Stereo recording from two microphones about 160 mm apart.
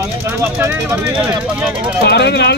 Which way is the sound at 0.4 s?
15° right (ahead or behind).